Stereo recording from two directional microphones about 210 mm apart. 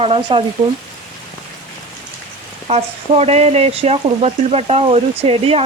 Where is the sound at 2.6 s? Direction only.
30° right (ahead or behind).